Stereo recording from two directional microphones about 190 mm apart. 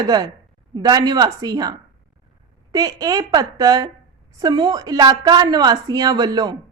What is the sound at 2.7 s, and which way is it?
A woman's voice, 20° right (ahead or behind).